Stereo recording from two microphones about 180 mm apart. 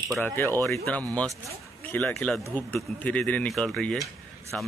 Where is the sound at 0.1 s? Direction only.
10° left (ahead or behind).